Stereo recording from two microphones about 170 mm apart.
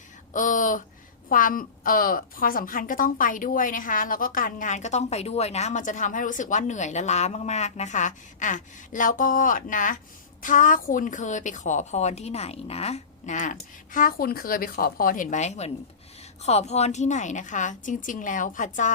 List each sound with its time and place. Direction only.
0.3 s a woman's voice: 50° left (ahead or behind)